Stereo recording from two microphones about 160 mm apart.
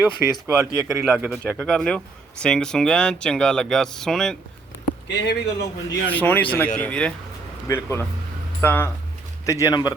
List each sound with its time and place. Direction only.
0.4 s speech: 20° right (ahead or behind)
1.0 s speech: 5° right (ahead or behind)
1.5 s speech: 5° left (ahead or behind)
5.0 s a man's voice: 90° left
6.1 s speech: 10° left (ahead or behind)